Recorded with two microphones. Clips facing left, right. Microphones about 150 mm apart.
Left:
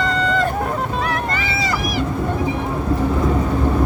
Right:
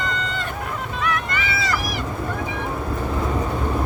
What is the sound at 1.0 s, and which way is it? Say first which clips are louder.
Vehicle: left 3 dB; 35° left (ahead or behind).